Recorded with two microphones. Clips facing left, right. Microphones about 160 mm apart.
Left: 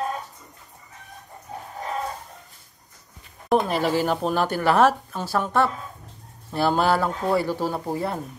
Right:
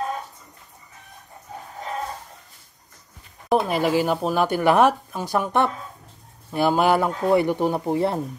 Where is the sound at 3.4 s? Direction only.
5° right (ahead or behind); by 8.2 s 25° right (ahead or behind).